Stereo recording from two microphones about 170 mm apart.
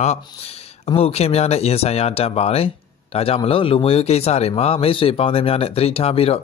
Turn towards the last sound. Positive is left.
turn(degrees=35)  # may be behind; listen again after turning